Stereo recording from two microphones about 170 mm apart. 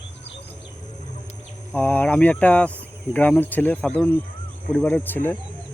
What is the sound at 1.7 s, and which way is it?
Speech, 10° left (ahead or behind).